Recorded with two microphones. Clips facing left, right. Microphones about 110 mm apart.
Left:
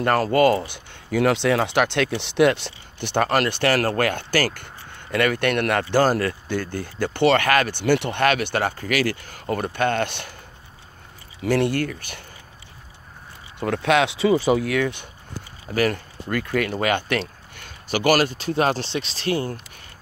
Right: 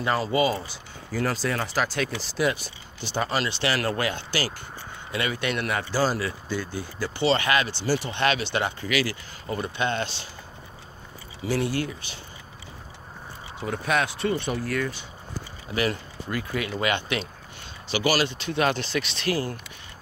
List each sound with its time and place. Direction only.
0.0 s speech: 55° left (ahead or behind)
11.4 s speech: 60° left (ahead or behind)
13.6 s speech: 85° left
15.7 s speech: 50° left (ahead or behind)
16.7 s speech: 45° left (ahead or behind)
17.6 s a sound: 50° left (ahead or behind)
18.4 s speech: 40° left (ahead or behind)